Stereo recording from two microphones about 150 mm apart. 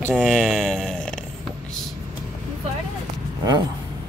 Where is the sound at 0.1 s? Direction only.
5° left (ahead or behind).